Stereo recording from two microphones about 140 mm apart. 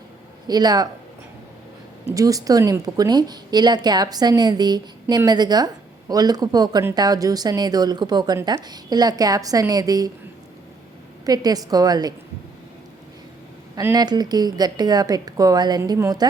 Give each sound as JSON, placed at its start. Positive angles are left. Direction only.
{"t": 0.4, "sound": "a woman's voice", "side_deg": -30}
{"t": 2.1, "sound": "a woman's voice", "side_deg": -25}
{"t": 11.3, "sound": "a woman's voice", "side_deg": -25}
{"t": 13.9, "sound": "a woman's voice", "side_deg": -30}